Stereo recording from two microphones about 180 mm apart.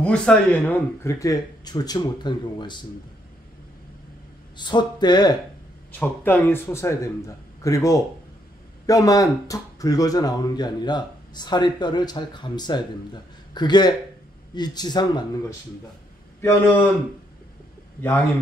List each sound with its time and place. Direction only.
0.0 s speech: 5° left (ahead or behind); by 2.8 s 25° left (ahead or behind)
4.6 s speech: 25° left (ahead or behind)
5.9 s speech: 10° left (ahead or behind)
16.3 s speech: 15° left (ahead or behind)